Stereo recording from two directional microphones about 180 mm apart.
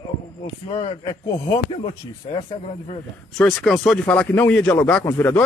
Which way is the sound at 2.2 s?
35° left (ahead or behind).